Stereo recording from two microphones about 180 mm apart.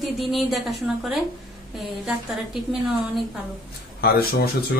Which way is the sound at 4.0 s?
60° left (ahead or behind).